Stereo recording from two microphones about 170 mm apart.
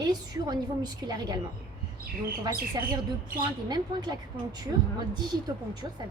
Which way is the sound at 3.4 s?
25° right (ahead or behind).